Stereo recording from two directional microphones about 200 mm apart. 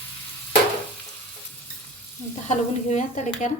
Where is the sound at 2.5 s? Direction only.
35° left (ahead or behind).